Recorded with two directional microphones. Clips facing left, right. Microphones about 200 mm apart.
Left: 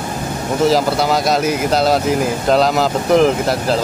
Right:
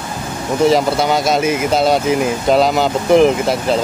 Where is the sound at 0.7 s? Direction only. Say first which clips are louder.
Right 1 dB; centre (ahead or behind).